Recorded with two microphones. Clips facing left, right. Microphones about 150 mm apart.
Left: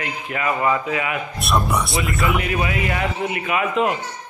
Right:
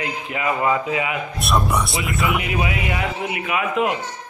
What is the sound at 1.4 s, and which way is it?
Speech, centre (ahead or behind).